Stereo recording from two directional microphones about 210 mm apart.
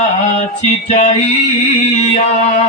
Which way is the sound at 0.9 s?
35° left (ahead or behind).